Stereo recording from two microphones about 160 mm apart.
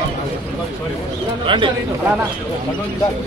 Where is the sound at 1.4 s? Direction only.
30° right (ahead or behind).